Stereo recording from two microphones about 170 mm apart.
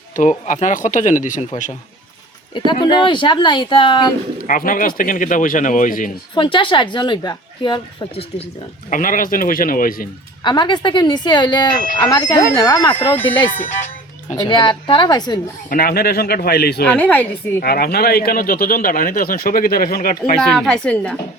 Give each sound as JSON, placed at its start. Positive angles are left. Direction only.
{"t": 0.2, "sound": "a man's voice", "side_deg": 45}
{"t": 2.8, "sound": "a woman's voice", "side_deg": 30}
{"t": 4.4, "sound": "a man's voice", "side_deg": 55}
{"t": 6.3, "sound": "a woman's voice", "side_deg": 30}
{"t": 8.9, "sound": "speech", "side_deg": 55}
{"t": 10.4, "sound": "a woman's voice", "side_deg": 25}
{"t": 14.3, "sound": "a woman's voice", "side_deg": 25}
{"t": 15.7, "sound": "speech", "side_deg": 60}
{"t": 17.0, "sound": "a woman's voice", "side_deg": 10}
{"t": 17.6, "sound": "speech", "side_deg": 65}
{"t": 20.4, "sound": "a woman's voice", "side_deg": 0}